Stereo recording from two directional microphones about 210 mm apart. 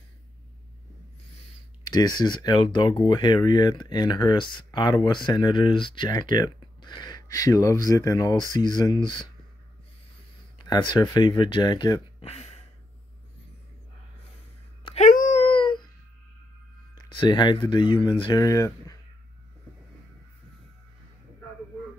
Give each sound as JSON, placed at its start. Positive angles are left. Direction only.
{"t": 1.9, "sound": "speech", "side_deg": 20}
{"t": 10.6, "sound": "speech", "side_deg": 20}
{"t": 14.9, "sound": "a sound", "side_deg": 35}
{"t": 16.9, "sound": "speech", "side_deg": 20}